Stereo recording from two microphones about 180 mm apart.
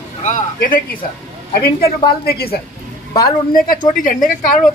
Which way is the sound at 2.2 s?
60° left (ahead or behind).